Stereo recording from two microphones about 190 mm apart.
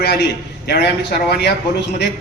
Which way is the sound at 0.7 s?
60° left (ahead or behind).